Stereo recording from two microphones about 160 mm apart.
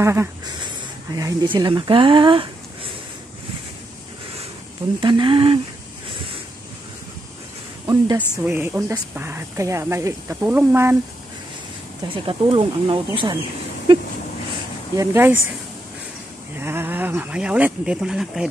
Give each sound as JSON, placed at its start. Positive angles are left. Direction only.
{"t": 0.0, "sound": "speech", "side_deg": -15}
{"t": 1.1, "sound": "speech", "side_deg": -25}
{"t": 5.0, "sound": "speech", "side_deg": -30}
{"t": 7.8, "sound": "speech", "side_deg": -25}
{"t": 8.5, "sound": "speech", "side_deg": -15}
{"t": 12.1, "sound": "speech", "side_deg": -35}
{"t": 15.0, "sound": "speech", "side_deg": -15}
{"t": 16.5, "sound": "speech", "side_deg": -15}